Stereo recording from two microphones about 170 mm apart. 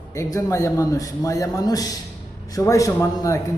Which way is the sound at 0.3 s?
20° left (ahead or behind).